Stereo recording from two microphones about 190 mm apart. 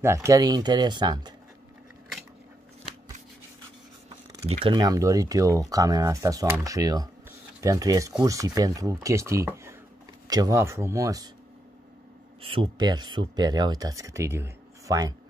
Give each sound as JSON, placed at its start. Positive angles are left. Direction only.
{"t": 0.0, "sound": "speech", "side_deg": -15}
{"t": 4.5, "sound": "speech", "side_deg": -30}
{"t": 12.4, "sound": "speech", "side_deg": -25}